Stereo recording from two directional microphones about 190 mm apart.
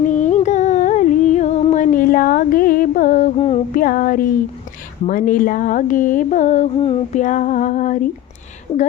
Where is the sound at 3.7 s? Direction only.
45° left (ahead or behind).